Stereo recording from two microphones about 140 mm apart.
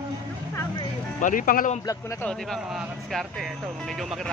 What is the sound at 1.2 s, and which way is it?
Speech, 75° left (ahead or behind).